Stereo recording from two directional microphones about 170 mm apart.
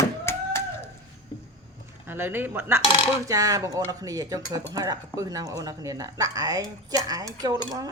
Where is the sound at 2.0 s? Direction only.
10° right (ahead or behind).